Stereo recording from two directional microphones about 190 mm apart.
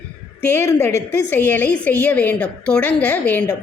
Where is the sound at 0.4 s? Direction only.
10° left (ahead or behind).